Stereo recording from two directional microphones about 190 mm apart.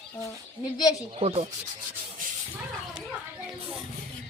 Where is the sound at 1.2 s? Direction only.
35° right (ahead or behind).